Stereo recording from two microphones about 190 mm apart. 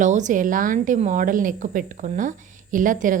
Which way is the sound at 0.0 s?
40° right (ahead or behind).